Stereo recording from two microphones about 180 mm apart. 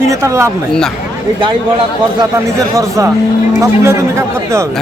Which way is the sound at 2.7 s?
15° right (ahead or behind).